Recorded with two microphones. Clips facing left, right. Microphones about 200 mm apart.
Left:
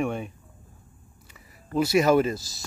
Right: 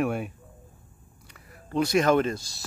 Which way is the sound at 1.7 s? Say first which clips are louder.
Left 2 dB; 5° left (ahead or behind).